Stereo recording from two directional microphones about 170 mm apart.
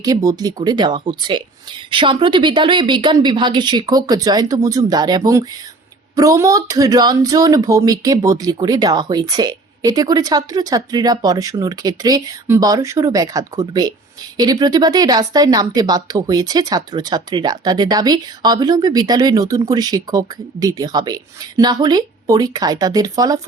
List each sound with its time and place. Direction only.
0.0 s speech: 20° right (ahead or behind)